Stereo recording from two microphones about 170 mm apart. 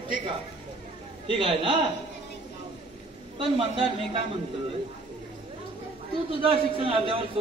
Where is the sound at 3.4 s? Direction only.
30° right (ahead or behind).